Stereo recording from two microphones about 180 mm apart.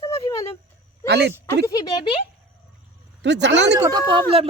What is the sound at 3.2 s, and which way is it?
Speech, 75° right (ahead or behind).